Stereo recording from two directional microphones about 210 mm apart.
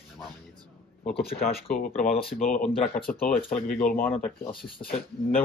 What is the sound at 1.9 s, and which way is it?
Speech, 30° left (ahead or behind).